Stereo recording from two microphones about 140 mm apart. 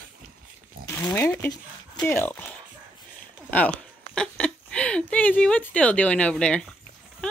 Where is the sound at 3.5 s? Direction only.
10° left (ahead or behind).